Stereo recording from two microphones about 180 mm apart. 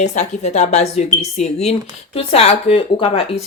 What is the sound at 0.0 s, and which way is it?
Speech, 40° left (ahead or behind).